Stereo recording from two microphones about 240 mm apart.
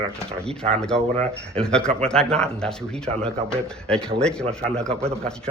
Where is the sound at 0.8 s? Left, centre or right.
Centre.